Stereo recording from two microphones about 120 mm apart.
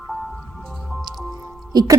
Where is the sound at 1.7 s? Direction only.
35° right (ahead or behind).